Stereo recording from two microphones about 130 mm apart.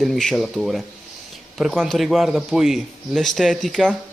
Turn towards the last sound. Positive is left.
turn(degrees=0)  # may be behind; listen again after turning